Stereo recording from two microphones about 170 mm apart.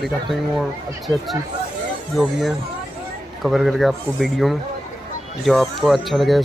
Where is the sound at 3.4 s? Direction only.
Centre (ahead or behind).